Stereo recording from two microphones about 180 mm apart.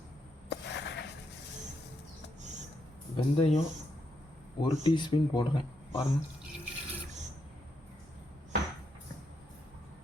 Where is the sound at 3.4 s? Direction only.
35° left (ahead or behind).